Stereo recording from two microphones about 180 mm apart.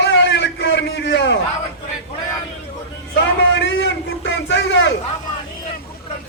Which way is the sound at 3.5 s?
85° left.